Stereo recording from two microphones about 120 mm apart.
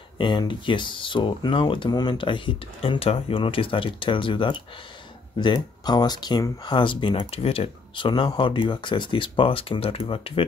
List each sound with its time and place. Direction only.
0.2 s speech: 40° left (ahead or behind)